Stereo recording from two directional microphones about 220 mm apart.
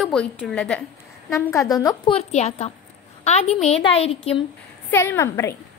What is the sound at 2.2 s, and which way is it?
A woman's voice, 30° left (ahead or behind).